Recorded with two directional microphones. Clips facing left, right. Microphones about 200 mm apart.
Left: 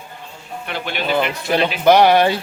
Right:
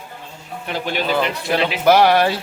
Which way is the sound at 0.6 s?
40° right (ahead or behind).